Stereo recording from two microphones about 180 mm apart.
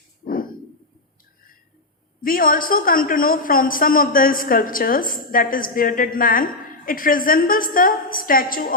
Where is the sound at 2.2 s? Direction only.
50° left (ahead or behind).